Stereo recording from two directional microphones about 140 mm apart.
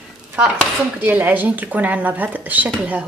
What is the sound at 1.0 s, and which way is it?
A woman's voice, 15° right (ahead or behind).